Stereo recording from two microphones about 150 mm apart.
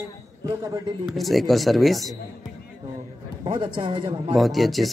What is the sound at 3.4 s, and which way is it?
Speech, 30° right (ahead or behind).